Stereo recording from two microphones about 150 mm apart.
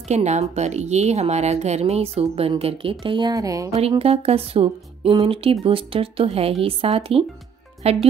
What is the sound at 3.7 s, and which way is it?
Speech, 40° right (ahead or behind).